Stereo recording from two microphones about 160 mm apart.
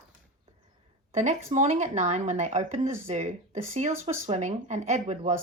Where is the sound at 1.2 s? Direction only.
45° right (ahead or behind).